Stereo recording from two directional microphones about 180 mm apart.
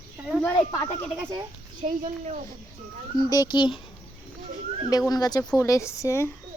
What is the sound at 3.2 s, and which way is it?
Speech, 20° left (ahead or behind).